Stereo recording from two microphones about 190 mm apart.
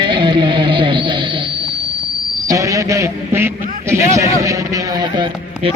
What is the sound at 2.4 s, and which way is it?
A man's voice, 15° right (ahead or behind).